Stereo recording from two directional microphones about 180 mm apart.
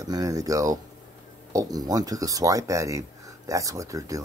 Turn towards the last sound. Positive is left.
turn(degrees=-20)  # may be behind; listen again after turning